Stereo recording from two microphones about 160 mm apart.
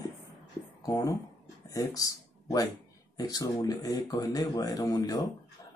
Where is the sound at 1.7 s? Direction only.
20° left (ahead or behind).